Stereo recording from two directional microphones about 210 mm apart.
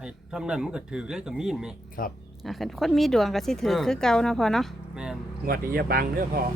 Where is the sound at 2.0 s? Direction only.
40° left (ahead or behind).